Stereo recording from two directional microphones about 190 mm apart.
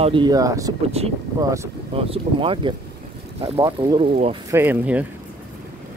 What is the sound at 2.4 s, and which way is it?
Speech, 25° right (ahead or behind).